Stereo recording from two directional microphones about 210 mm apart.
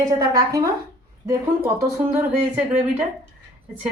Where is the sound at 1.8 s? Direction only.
10° right (ahead or behind).